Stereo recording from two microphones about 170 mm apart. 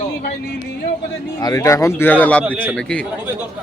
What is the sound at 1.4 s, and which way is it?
Speech, 20° left (ahead or behind).